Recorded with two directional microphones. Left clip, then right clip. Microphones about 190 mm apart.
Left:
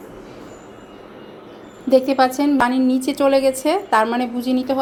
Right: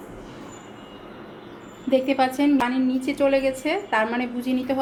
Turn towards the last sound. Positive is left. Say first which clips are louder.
# left 5 dB
turn(degrees=20)  # may be behind; listen again after turning